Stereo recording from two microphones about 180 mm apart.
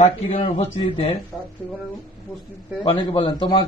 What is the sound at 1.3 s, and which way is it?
Speech, centre (ahead or behind).